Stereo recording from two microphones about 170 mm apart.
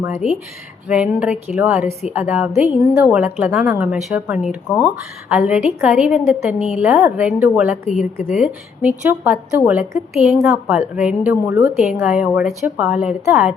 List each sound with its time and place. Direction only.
0.0 s a woman's voice: 15° right (ahead or behind)
11.7 s a woman's voice: 5° right (ahead or behind)